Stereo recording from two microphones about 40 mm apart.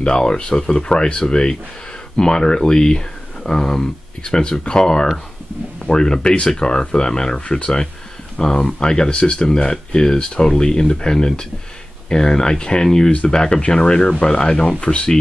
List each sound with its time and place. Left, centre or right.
0.0 s speech: left
4.2 s speech: left